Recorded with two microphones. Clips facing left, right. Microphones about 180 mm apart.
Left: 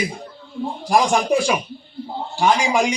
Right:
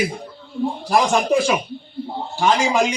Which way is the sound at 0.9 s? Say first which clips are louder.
Left 1 dB; 15° left (ahead or behind).